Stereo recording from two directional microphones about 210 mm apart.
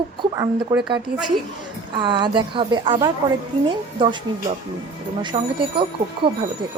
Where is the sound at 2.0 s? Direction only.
20° right (ahead or behind).